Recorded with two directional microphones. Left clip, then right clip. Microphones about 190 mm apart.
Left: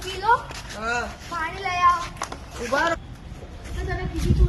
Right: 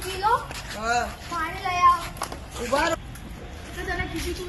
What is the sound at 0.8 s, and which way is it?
Speech, 10° left (ahead or behind).